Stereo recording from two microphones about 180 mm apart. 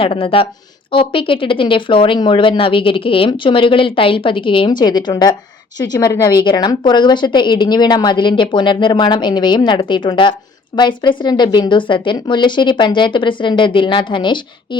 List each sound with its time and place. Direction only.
0.0 s a woman's voice: 30° left (ahead or behind)